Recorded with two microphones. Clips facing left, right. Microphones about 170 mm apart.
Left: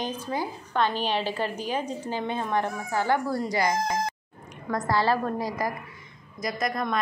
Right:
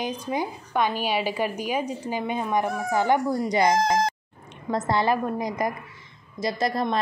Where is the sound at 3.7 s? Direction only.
85° right.